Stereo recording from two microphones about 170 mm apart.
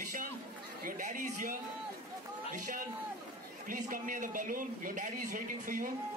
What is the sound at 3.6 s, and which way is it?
A man's voice, 50° right (ahead or behind).